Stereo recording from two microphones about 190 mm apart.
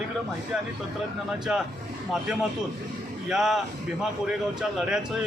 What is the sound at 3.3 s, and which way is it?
Speech, centre (ahead or behind).